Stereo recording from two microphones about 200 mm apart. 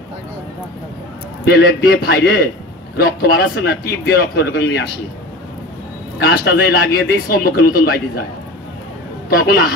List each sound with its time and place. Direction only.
1.5 s a man's voice: 50° left (ahead or behind)
6.1 s a man's voice: 55° left (ahead or behind)
9.5 s a man's voice: 50° left (ahead or behind)